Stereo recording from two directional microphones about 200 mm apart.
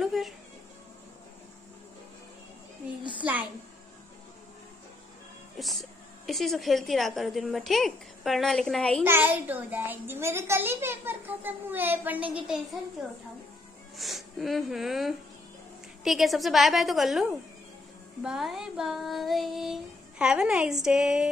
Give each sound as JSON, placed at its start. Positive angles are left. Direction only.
{"t": 0.0, "sound": "a woman's voice", "side_deg": 0}
{"t": 3.0, "sound": "a sound", "side_deg": -25}
{"t": 5.6, "sound": "a woman's voice", "side_deg": 0}
{"t": 9.0, "sound": "a child's voice", "side_deg": -10}
{"t": 13.9, "sound": "a woman's voice", "side_deg": 0}